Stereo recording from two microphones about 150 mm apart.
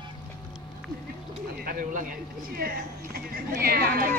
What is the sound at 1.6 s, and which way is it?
Speech, 65° right (ahead or behind).